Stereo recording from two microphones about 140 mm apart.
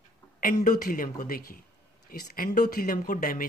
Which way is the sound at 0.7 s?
80° left.